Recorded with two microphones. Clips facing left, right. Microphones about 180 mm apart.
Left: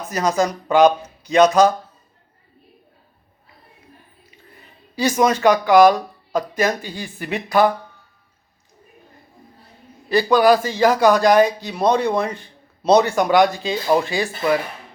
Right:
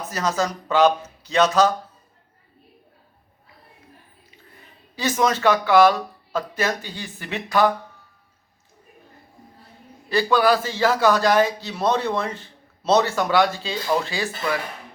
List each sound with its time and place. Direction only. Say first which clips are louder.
0.1 s a man's voice: left 5 dB; 15° left (ahead or behind)
5.0 s a man's voice: left 4 dB; 10° left (ahead or behind)
10.1 s a man's voice: left 4 dB; 15° left (ahead or behind)